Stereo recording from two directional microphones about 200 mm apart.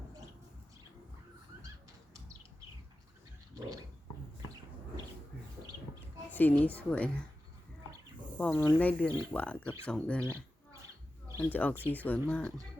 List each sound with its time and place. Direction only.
6.3 s speech: 10° left (ahead or behind)
8.4 s speech: 10° left (ahead or behind)
11.3 s a sound: 15° right (ahead or behind)
11.5 s speech: 5° left (ahead or behind)